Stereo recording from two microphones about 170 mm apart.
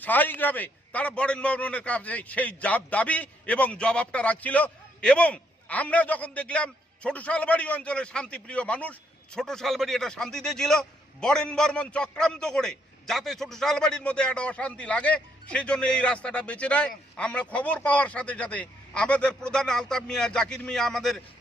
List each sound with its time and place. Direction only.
0.0 s a man's voice: 10° left (ahead or behind)